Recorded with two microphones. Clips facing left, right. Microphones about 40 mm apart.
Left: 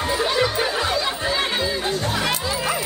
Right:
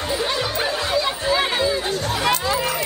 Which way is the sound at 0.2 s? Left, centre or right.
Centre.